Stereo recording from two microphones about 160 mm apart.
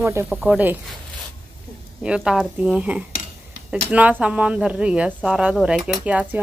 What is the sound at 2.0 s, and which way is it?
Speech, 5° right (ahead or behind).